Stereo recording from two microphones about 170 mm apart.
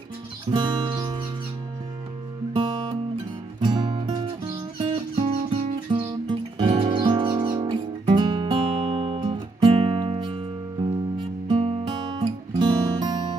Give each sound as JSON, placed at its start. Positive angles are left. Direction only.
{"t": 0.5, "sound": "guitar", "side_deg": -25}
{"t": 2.5, "sound": "music", "side_deg": -25}